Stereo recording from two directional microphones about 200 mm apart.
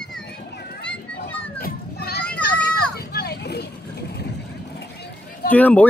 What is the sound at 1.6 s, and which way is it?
Children playing, 50° left (ahead or behind).